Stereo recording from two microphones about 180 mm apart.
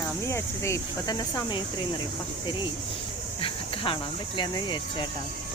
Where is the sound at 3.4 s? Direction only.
30° left (ahead or behind).